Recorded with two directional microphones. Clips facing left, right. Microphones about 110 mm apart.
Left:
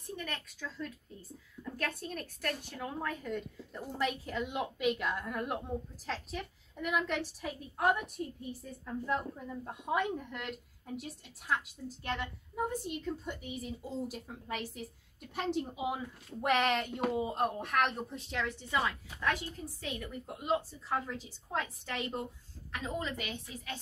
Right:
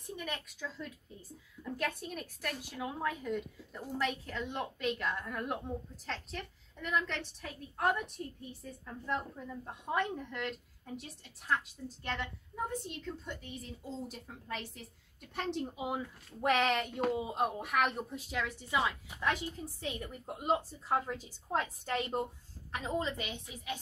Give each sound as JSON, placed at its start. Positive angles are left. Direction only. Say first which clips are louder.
{"t": 0.0, "sound": "a woman's voice", "louder": "even", "side_deg": -15}
{"t": 3.8, "sound": "a woman's voice", "louder": "left 1 dB", "side_deg": 10}
{"t": 21.5, "sound": "a woman's voice", "louder": "right 3 dB", "side_deg": -35}